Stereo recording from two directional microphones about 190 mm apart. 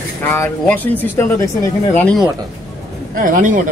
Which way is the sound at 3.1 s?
45° right (ahead or behind).